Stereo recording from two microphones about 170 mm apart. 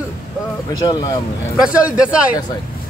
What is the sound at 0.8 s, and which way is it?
Speech, 25° left (ahead or behind).